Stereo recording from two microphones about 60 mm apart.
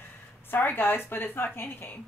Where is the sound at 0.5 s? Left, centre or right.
Left.